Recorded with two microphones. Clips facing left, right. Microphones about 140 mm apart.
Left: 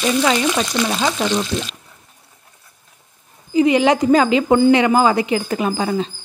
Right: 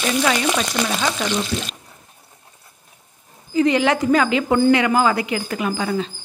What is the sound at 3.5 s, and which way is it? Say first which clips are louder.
Speech: left 3 dB; 15° left (ahead or behind).